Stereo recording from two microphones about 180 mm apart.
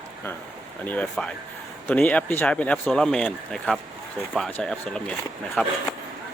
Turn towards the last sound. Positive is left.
turn(degrees=10)  # may be behind; listen again after turning